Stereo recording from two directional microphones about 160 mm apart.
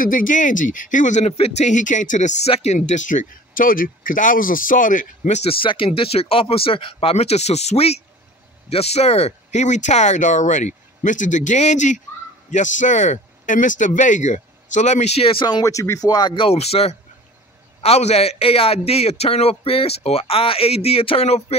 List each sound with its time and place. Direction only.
0.0 s a man's voice: 60° left (ahead or behind); by 21.5 s 40° left (ahead or behind)